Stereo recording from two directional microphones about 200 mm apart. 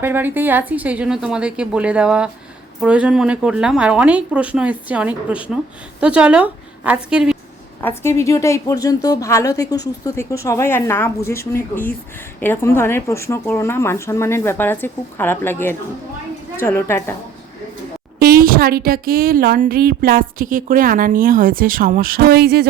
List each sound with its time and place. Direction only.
0.0 s a woman's voice: 10° right (ahead or behind)
7.8 s speech: 10° left (ahead or behind)
18.2 s a woman's voice: 45° right (ahead or behind)